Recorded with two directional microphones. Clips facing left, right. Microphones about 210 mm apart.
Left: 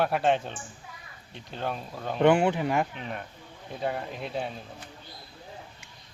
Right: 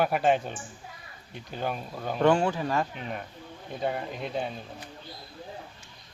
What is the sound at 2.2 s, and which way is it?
Speech, 20° left (ahead or behind).